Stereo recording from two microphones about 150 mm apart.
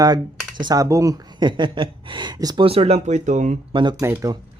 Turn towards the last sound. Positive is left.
turn(degrees=-20)  # may be behind; listen again after turning